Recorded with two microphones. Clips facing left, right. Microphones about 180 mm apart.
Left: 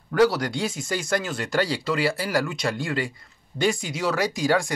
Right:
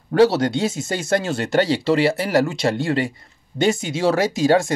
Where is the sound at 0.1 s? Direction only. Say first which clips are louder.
Right 5 dB; 25° right (ahead or behind).